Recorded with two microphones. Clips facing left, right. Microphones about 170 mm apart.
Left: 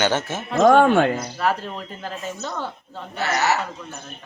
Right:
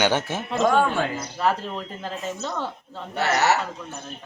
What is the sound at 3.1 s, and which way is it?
Speech, 65° right (ahead or behind).